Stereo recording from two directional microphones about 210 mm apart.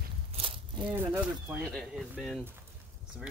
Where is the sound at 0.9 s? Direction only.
10° right (ahead or behind).